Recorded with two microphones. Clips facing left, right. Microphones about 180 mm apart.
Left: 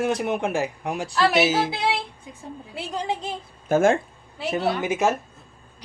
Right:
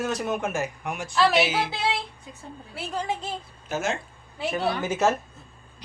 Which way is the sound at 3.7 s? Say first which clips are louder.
Left 10 dB; 50° left (ahead or behind).